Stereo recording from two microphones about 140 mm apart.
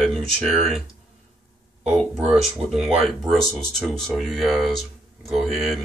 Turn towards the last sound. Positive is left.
turn(degrees=0)  # may be behind; listen again after turning